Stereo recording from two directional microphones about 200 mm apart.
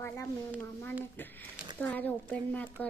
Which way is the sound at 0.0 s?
10° left (ahead or behind).